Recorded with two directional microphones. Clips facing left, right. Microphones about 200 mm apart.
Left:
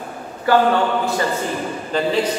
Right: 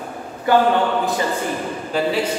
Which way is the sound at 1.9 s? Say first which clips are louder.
Even; 10° right (ahead or behind).